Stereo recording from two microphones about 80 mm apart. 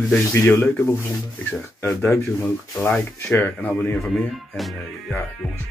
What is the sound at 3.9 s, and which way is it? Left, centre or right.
Speech, centre.